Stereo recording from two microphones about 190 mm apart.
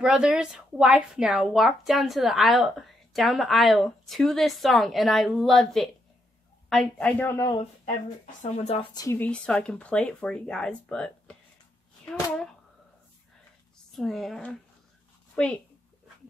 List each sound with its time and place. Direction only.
0.0 s a woman's voice: 5° right (ahead or behind); by 7.5 s 15° left (ahead or behind)
8.4 s speech: 30° left (ahead or behind)
8.9 s a woman's voice: 15° left (ahead or behind)
13.9 s a woman's voice: centre (ahead or behind)